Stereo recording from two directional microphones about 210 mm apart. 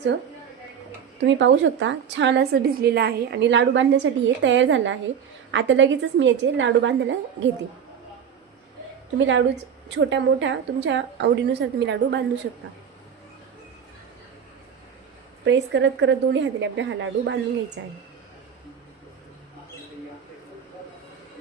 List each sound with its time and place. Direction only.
1.2 s a woman's voice: 60° right (ahead or behind)
9.1 s a woman's voice: 60° right (ahead or behind)
15.4 s a woman's voice: 60° right (ahead or behind)